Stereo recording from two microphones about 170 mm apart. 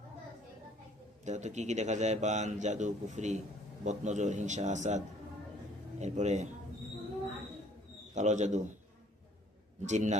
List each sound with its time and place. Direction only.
1.2 s a man's voice: 45° right (ahead or behind)
8.1 s a man's voice: 45° right (ahead or behind)
9.8 s a man's voice: 45° right (ahead or behind)